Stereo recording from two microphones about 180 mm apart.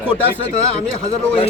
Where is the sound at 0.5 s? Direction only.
35° left (ahead or behind).